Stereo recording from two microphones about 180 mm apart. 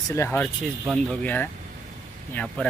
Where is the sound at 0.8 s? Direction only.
Centre (ahead or behind).